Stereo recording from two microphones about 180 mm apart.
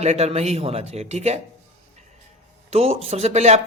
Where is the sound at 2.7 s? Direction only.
35° right (ahead or behind).